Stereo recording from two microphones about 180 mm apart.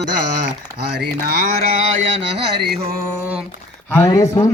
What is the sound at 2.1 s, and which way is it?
Mantra, 80° right.